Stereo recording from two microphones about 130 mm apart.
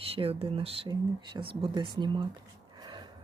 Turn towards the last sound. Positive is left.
turn(degrees=-30)  # may be behind; listen again after turning